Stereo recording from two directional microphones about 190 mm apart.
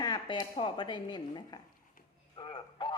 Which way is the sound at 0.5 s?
25° left (ahead or behind).